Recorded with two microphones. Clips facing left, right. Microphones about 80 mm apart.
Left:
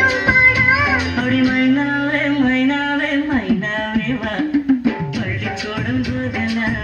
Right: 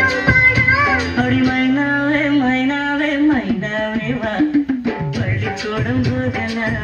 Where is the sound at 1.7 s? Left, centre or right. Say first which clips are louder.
Right 1 dB; centre.